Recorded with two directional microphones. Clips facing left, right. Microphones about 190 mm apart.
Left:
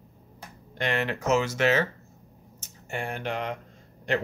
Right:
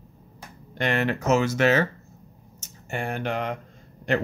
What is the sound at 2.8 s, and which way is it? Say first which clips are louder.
Speech: right 3 dB; 45° right (ahead or behind).